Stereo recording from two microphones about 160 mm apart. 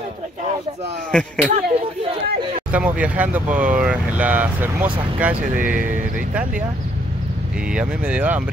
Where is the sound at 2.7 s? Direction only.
10° right (ahead or behind).